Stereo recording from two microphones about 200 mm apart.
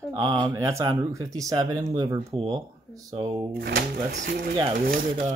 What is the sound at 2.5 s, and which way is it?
Speech, 20° right (ahead or behind).